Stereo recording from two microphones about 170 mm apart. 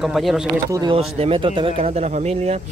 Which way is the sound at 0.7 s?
25° right (ahead or behind).